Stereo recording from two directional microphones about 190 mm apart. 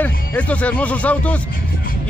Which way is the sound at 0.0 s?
10° left (ahead or behind).